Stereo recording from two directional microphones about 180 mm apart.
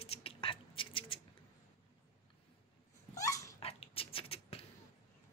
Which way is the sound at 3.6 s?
35° left (ahead or behind).